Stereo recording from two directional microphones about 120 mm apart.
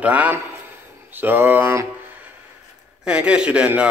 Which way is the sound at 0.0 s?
10° right (ahead or behind).